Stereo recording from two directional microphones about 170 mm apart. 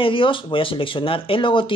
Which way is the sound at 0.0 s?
30° left (ahead or behind).